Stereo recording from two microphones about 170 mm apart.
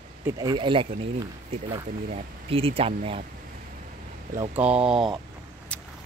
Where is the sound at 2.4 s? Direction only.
35° right (ahead or behind).